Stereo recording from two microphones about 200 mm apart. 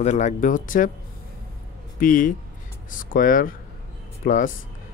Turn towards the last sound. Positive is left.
turn(degrees=40)  # may be behind; listen again after turning